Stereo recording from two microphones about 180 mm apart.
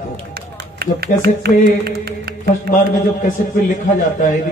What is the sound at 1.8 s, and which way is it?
Mantra, 60° right (ahead or behind).